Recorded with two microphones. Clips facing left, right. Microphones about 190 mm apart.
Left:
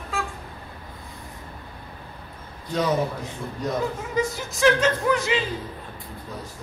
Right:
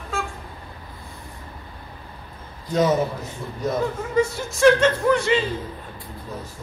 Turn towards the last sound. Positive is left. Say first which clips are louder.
# right 3 dB
turn(degrees=0)  # may be behind; listen again after turning